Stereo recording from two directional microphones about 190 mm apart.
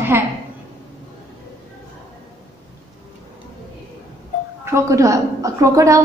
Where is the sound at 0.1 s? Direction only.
10° right (ahead or behind).